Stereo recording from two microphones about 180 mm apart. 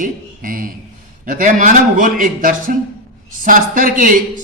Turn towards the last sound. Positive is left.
turn(degrees=-50)  # may be behind; listen again after turning